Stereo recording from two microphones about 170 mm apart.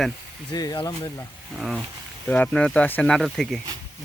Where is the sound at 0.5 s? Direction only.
20° left (ahead or behind).